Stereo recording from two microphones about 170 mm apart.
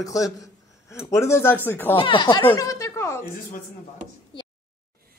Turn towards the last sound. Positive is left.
turn(degrees=15)  # may be behind; listen again after turning